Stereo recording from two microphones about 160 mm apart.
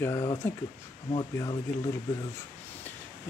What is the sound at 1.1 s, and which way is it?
Speech, 30° left (ahead or behind).